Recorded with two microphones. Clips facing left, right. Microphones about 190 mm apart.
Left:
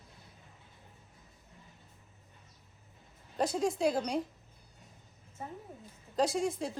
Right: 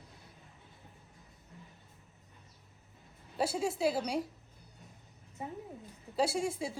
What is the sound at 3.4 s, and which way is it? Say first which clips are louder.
Speech: left 2 dB; 5° right (ahead or behind).